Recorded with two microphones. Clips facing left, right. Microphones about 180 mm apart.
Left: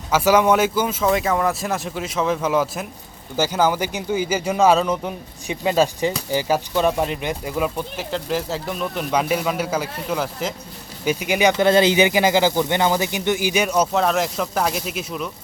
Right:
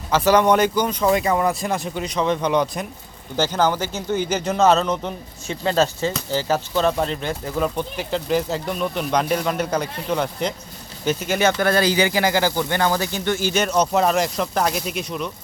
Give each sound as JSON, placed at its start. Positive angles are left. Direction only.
{"t": 0.1, "sound": "speech", "side_deg": 10}
{"t": 13.9, "sound": "speech", "side_deg": 0}